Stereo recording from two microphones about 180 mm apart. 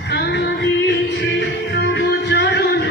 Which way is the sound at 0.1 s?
70° left (ahead or behind).